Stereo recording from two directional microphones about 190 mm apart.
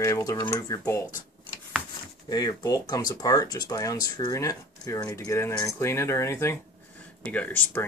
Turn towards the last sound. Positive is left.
turn(degrees=10)  # may be behind; listen again after turning